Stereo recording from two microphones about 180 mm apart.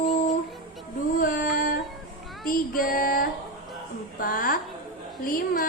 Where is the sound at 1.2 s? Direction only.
50° left (ahead or behind).